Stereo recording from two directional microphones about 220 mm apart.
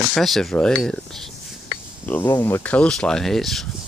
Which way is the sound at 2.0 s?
10° left (ahead or behind).